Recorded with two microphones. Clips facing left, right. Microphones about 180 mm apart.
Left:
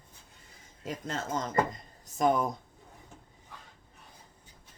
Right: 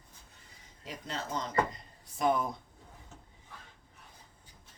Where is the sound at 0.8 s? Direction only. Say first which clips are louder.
Left 4 dB; 45° left (ahead or behind).